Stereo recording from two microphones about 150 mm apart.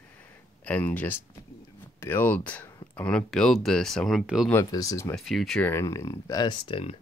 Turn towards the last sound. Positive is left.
turn(degrees=35)  # may be behind; listen again after turning